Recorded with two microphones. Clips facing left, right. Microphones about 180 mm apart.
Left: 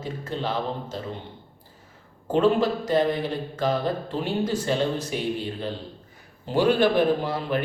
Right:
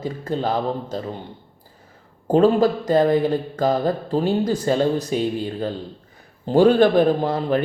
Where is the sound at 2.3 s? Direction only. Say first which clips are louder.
Right 5 dB; 40° right (ahead or behind).